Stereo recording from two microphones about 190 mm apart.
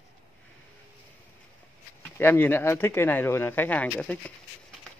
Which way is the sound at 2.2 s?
10° left (ahead or behind).